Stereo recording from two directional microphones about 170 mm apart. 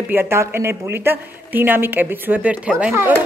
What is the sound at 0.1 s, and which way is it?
A woman's voice, 15° right (ahead or behind).